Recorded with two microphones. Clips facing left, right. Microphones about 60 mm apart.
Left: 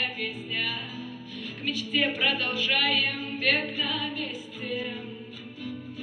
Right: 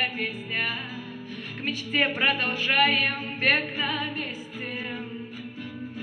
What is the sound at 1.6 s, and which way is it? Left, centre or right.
Speech, right.